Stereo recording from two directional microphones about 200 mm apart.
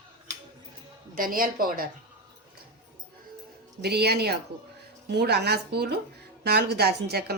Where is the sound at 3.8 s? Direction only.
55° right (ahead or behind).